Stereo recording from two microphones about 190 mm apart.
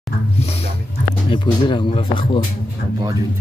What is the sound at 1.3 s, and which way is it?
Speech, 25° left (ahead or behind).